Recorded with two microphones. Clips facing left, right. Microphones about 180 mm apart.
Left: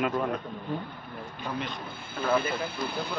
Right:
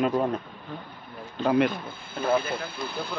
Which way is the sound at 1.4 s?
70° right (ahead or behind).